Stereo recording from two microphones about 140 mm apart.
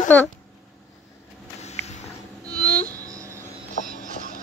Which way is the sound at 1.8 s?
50° left (ahead or behind).